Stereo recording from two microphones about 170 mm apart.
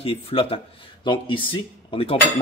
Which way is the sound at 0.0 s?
35° left (ahead or behind).